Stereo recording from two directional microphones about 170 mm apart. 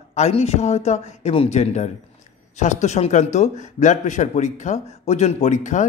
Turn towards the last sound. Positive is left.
turn(degrees=45)  # may be behind; listen again after turning